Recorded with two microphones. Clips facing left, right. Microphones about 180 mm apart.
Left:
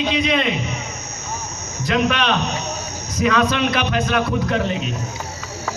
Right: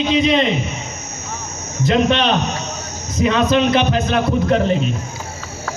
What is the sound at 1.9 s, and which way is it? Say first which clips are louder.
A man's voice: right 4 dB; 30° right (ahead or behind).